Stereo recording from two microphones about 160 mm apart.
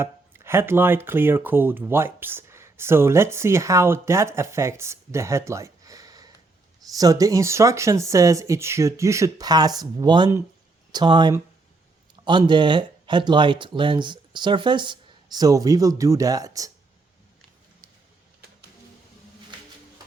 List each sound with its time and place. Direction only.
0.0 s speech: 15° right (ahead or behind)